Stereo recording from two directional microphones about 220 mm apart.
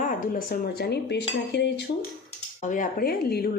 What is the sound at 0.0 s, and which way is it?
Speech, 40° left (ahead or behind).